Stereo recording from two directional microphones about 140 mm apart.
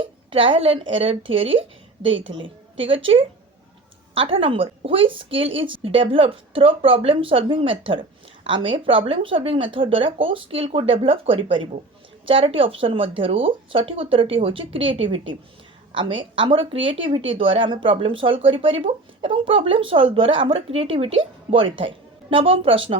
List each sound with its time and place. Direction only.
0.0 s speech: 40° right (ahead or behind)